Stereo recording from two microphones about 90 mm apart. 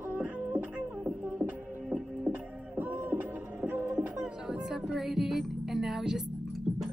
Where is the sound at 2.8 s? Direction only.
20° right (ahead or behind).